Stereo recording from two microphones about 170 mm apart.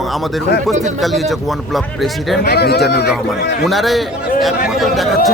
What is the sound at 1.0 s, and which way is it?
A man's voice, centre (ahead or behind).